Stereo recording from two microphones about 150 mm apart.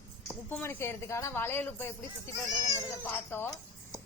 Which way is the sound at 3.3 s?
20° left (ahead or behind).